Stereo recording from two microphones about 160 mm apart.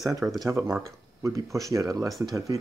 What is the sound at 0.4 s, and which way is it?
Speech, 20° right (ahead or behind).